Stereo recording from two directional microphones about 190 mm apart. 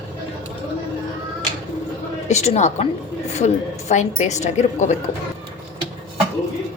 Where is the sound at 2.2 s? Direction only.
35° left (ahead or behind).